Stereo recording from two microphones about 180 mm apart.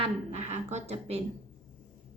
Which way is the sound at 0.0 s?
35° right (ahead or behind).